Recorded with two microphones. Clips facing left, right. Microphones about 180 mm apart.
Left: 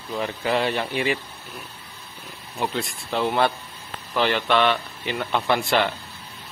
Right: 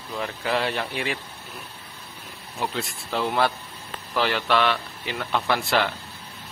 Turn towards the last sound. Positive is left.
turn(degrees=0)  # may be behind; listen again after turning